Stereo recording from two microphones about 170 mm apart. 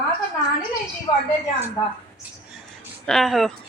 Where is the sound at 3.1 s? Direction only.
Centre (ahead or behind).